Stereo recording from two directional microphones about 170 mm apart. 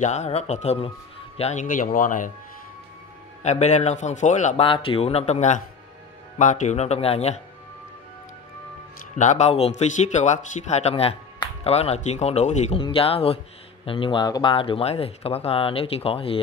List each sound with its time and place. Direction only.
0.0 s a man's voice: 40° left (ahead or behind)
3.4 s a man's voice: 40° left (ahead or behind)
4.6 s speech: 30° left (ahead or behind)
9.1 s speech: 45° left (ahead or behind)